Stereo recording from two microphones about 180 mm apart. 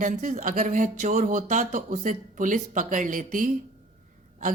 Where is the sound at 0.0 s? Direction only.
45° right (ahead or behind).